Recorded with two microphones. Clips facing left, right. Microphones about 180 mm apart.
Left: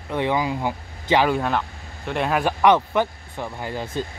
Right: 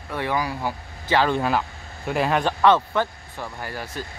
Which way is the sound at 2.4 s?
15° left (ahead or behind).